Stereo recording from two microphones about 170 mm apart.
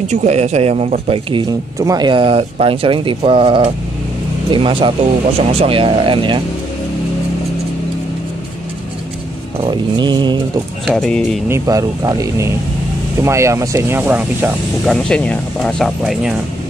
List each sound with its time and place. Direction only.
0.1 s speech: 40° right (ahead or behind)
9.7 s speech: 25° right (ahead or behind)
10.9 s speech: centre (ahead or behind)
11.4 s speech: 20° right (ahead or behind)
14.9 s speech: 5° left (ahead or behind)